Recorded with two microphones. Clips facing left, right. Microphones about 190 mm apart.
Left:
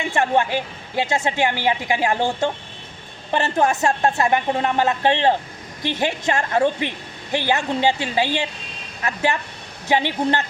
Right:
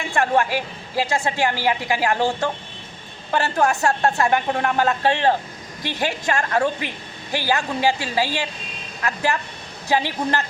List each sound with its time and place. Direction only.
0.1 s a woman's voice: 20° left (ahead or behind)